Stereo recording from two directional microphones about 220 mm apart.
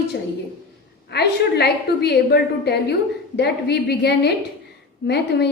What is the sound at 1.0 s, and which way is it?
A woman's voice, 50° left (ahead or behind).